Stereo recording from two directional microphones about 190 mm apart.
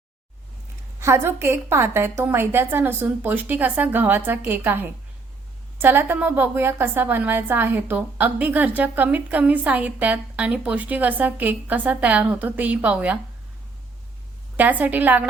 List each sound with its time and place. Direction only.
0.9 s a woman's voice: 15° right (ahead or behind)
14.5 s a woman's voice: 10° right (ahead or behind)